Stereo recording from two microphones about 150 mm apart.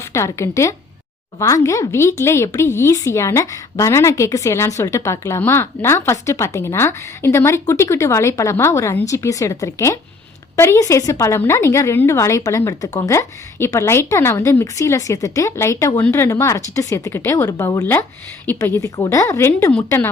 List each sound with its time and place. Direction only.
0.0 s a woman's voice: 20° left (ahead or behind)